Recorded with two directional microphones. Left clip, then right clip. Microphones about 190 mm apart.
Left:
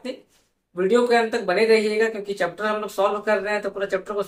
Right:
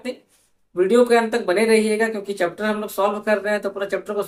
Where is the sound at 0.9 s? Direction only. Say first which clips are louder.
Right 2 dB; 15° right (ahead or behind).